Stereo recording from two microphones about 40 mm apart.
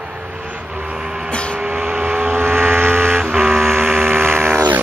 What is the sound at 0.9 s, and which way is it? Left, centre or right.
Vehicle, right.